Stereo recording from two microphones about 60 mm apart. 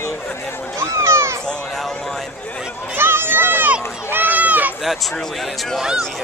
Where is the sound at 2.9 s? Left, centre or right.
Right.